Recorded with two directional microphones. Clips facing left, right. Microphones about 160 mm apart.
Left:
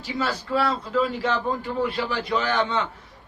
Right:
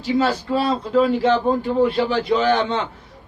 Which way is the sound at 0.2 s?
25° right (ahead or behind).